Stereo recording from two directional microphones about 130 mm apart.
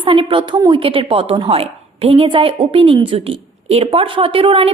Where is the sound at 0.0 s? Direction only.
45° right (ahead or behind).